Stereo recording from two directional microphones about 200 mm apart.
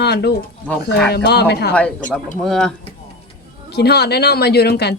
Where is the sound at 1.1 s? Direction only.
55° left (ahead or behind).